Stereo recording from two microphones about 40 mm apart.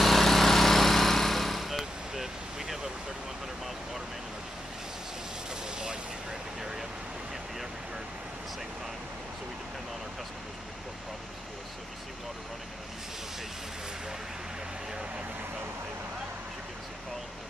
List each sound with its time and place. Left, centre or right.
0.0 s vehicle: centre
5.5 s vehicle: centre